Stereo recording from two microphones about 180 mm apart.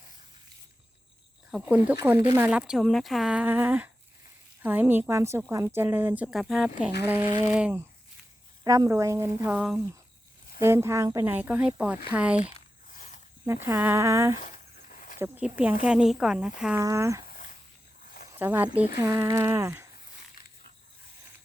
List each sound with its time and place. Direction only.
1.5 s a woman's voice: 5° right (ahead or behind)
7.0 s a woman's voice: 10° right (ahead or behind)
12.9 s a sound: 45° left (ahead or behind)
13.4 s a woman's voice: 15° right (ahead or behind)
14.4 s a sound: 50° left (ahead or behind)
15.2 s a woman's voice: 10° right (ahead or behind)
16.8 s a woman's voice: 15° right (ahead or behind)
17.2 s a sound: 50° left (ahead or behind)
18.3 s a woman's voice: 10° right (ahead or behind)